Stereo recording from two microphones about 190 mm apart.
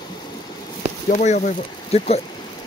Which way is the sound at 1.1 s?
40° left (ahead or behind).